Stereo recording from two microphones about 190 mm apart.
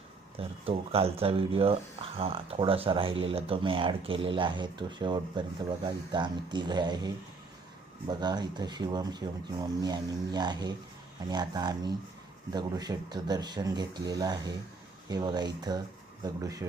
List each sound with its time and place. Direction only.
0.3 s speech: 30° right (ahead or behind)